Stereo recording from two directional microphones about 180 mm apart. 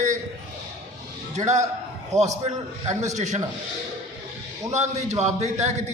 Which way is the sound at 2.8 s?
40° right (ahead or behind).